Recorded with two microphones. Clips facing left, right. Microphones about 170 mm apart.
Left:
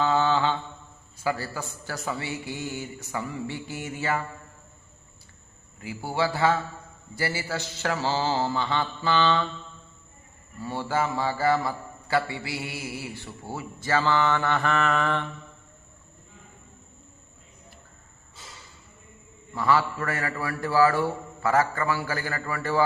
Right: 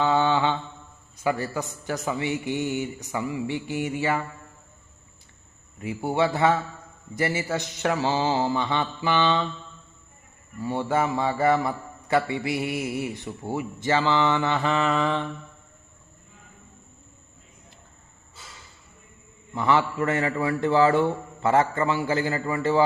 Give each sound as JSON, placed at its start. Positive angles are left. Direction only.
{"t": 0.0, "sound": "mantra", "side_deg": -15}
{"t": 1.2, "sound": "a man's voice", "side_deg": -20}
{"t": 5.8, "sound": "a man's voice", "side_deg": -20}
{"t": 7.2, "sound": "mantra", "side_deg": -20}
{"t": 10.6, "sound": "a man's voice", "side_deg": -20}
{"t": 19.5, "sound": "a man's voice", "side_deg": -20}